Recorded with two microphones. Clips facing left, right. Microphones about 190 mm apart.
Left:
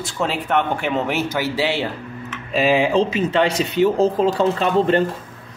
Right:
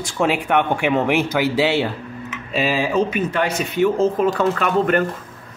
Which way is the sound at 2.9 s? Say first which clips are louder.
Left 2 dB; 25° left (ahead or behind).